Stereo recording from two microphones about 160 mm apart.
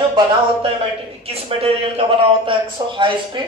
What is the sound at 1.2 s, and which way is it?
Speech, 35° right (ahead or behind).